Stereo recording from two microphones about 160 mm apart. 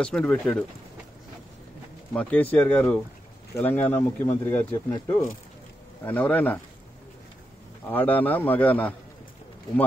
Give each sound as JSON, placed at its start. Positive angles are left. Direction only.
{"t": 0.0, "sound": "speech", "side_deg": 5}
{"t": 2.1, "sound": "speech", "side_deg": 10}
{"t": 7.9, "sound": "speech", "side_deg": 10}